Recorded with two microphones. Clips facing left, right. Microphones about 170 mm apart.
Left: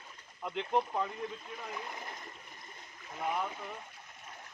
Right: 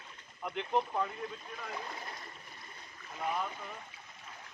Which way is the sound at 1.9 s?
20° left (ahead or behind).